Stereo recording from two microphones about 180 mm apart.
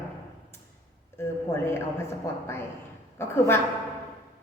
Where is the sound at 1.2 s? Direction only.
15° left (ahead or behind).